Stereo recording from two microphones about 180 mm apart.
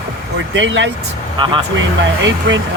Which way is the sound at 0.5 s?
90° right.